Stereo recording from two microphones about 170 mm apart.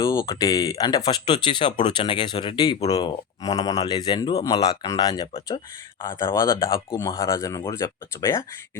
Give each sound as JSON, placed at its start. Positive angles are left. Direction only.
{"t": 0.0, "sound": "speech", "side_deg": 20}